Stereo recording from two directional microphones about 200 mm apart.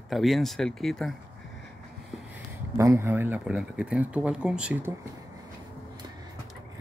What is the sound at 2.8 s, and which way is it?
Speech, 15° right (ahead or behind).